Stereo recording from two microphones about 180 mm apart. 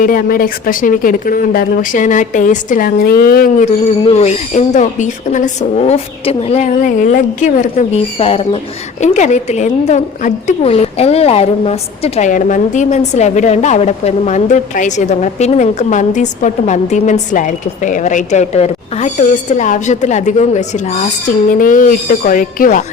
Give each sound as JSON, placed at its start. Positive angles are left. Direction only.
{"t": 0.0, "sound": "speech", "side_deg": 50}
{"t": 4.0, "sound": "a woman's voice", "side_deg": 35}